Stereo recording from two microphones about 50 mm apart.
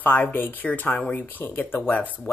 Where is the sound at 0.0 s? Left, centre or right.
Left.